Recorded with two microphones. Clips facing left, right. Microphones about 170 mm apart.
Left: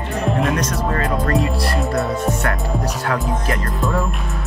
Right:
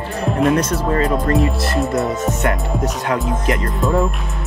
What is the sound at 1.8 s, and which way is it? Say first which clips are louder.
Music: right 4 dB; centre (ahead or behind).